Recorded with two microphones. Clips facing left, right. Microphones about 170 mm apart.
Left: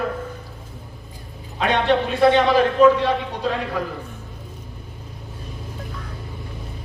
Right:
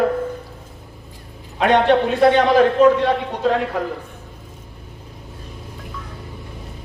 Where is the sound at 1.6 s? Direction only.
45° right (ahead or behind).